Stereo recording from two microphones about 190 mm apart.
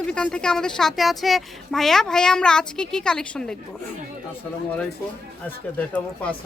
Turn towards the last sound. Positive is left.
turn(degrees=5)  # may be behind; listen again after turning